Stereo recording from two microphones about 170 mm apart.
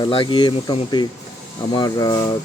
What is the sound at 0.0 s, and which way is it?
Speech, 30° left (ahead or behind).